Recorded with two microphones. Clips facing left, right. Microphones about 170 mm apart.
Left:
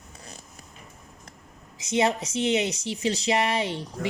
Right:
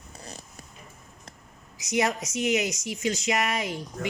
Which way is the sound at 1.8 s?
25° left (ahead or behind).